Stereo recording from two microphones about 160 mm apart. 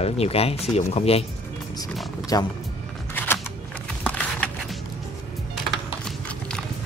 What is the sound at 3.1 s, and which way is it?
Single-lens reflex camera, 10° left (ahead or behind).